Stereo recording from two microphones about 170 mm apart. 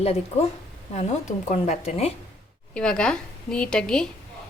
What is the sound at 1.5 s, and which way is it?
Speech, 40° left (ahead or behind).